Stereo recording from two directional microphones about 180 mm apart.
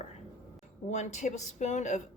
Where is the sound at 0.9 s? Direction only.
40° left (ahead or behind).